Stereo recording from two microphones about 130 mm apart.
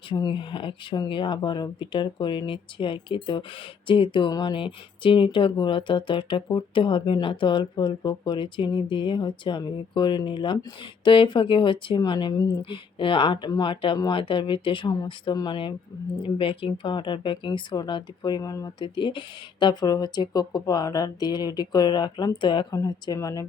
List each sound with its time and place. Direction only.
0.1 s speech: 40° left (ahead or behind)